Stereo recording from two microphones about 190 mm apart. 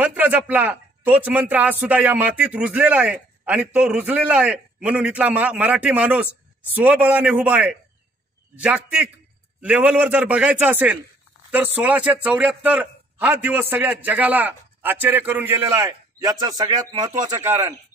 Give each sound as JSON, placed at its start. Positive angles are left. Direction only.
{"t": 0.0, "sound": "a man's voice", "side_deg": -10}